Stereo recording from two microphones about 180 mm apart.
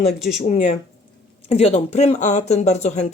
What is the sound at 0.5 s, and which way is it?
Speech, 40° left (ahead or behind).